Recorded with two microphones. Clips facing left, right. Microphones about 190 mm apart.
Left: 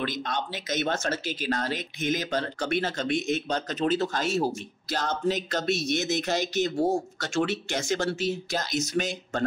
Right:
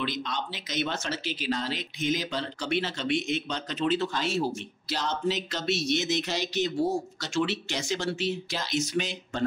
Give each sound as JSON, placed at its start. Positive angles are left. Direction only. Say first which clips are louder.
{"t": 0.0, "sound": "speech", "louder": "left 2 dB", "side_deg": 50}